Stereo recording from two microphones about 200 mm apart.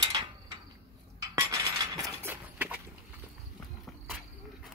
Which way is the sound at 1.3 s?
15° right (ahead or behind).